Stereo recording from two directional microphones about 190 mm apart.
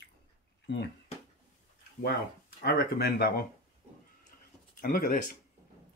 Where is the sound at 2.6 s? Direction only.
55° left (ahead or behind).